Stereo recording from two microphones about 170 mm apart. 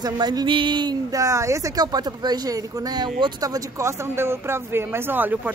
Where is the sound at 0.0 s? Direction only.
25° right (ahead or behind).